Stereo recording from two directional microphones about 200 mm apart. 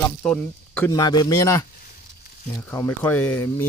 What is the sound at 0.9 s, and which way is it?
Speech, 20° left (ahead or behind).